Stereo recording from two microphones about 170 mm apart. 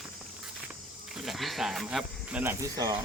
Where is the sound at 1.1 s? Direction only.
Centre (ahead or behind).